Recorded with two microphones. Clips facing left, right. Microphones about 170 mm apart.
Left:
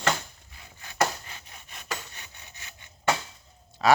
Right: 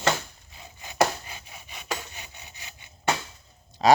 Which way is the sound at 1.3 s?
10° right (ahead or behind).